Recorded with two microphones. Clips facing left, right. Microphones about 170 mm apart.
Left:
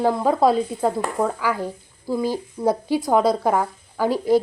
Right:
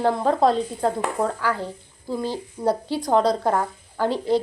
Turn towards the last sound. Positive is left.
turn(degrees=10)  # may be behind; listen again after turning